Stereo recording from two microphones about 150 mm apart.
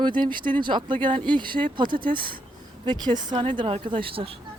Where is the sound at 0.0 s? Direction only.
30° right (ahead or behind).